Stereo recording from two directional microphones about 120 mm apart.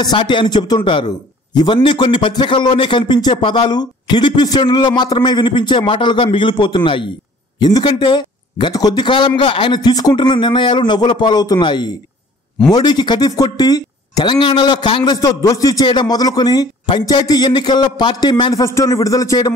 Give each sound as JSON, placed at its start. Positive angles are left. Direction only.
{"t": 0.0, "sound": "a man's voice", "side_deg": 40}
{"t": 9.8, "sound": "a man's voice", "side_deg": 35}
{"t": 15.1, "sound": "a man's voice", "side_deg": 30}